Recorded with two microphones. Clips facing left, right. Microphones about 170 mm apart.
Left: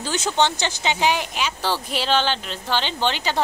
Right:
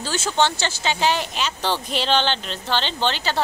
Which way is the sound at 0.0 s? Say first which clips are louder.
Even; 15° left (ahead or behind).